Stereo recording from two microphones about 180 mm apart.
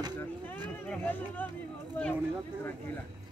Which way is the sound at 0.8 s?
10° left (ahead or behind).